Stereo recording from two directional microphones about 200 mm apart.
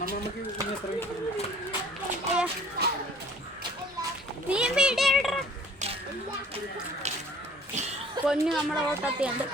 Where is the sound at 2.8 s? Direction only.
55° right (ahead or behind).